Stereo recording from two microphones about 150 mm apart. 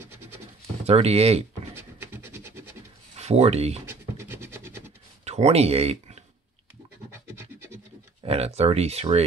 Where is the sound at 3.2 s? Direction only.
45° right (ahead or behind).